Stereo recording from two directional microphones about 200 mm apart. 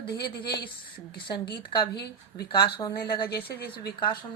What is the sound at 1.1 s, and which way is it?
Speech, 25° left (ahead or behind).